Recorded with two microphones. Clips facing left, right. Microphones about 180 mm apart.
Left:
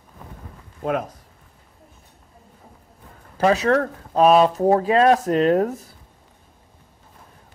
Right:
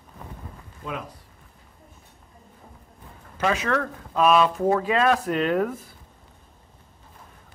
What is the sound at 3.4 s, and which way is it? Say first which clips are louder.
Speech: left 6 dB; 35° left (ahead or behind).